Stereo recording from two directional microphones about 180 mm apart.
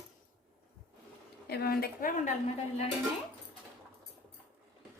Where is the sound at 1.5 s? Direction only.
60° left (ahead or behind).